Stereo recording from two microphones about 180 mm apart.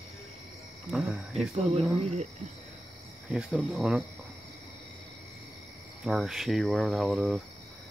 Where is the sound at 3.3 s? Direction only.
5° right (ahead or behind).